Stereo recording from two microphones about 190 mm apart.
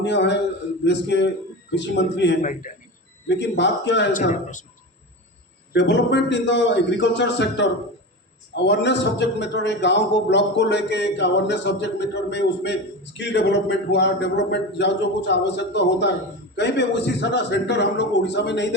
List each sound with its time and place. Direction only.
0.0 s a man's voice: 65° left (ahead or behind)
2.4 s a man's voice: 45° left (ahead or behind)
3.2 s a man's voice: 65° left (ahead or behind)
5.7 s a man's voice: 65° left (ahead or behind)